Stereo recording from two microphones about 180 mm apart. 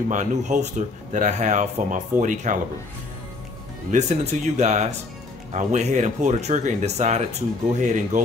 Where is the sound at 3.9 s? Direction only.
40° right (ahead or behind).